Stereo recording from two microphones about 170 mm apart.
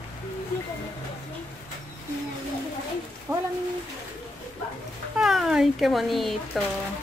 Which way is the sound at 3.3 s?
15° right (ahead or behind).